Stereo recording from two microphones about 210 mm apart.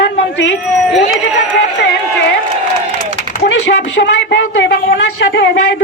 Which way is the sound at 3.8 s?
60° left (ahead or behind).